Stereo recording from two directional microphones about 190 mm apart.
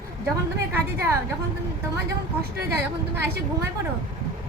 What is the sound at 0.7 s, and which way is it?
Speech, 15° right (ahead or behind).